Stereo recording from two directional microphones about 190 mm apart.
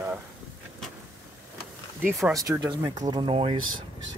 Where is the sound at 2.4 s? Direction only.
20° right (ahead or behind).